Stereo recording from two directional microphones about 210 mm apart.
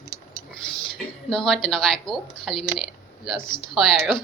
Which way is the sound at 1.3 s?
Centre (ahead or behind).